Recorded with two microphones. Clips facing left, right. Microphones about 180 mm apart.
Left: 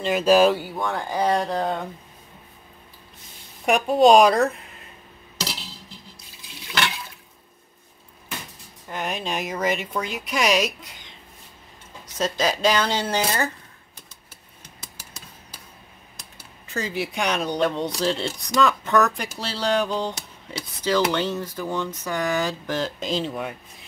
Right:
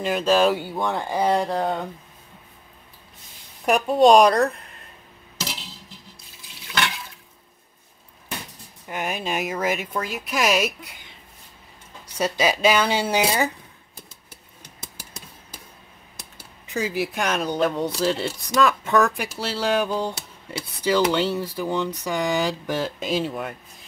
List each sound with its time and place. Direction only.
0.2 s speech: 5° left (ahead or behind)
0.6 s speech: 25° right (ahead or behind)
1.1 s speech: 10° right (ahead or behind)
3.6 s speech: centre (ahead or behind)
8.8 s speech: 10° right (ahead or behind)
12.2 s speech: 10° right (ahead or behind)
16.2 s speech: 10° right (ahead or behind)